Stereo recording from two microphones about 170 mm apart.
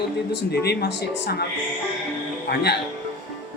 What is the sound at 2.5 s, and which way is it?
Speech, 75° left (ahead or behind).